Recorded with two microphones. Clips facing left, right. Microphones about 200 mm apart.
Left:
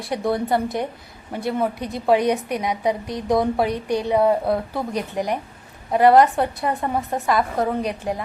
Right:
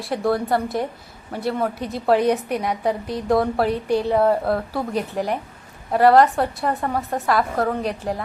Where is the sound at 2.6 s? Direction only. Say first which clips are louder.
Even; 15° left (ahead or behind).